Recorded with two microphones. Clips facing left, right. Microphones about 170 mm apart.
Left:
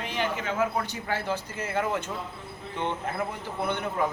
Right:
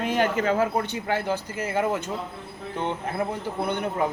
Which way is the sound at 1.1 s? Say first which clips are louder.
Right 4 dB; 15° right (ahead or behind).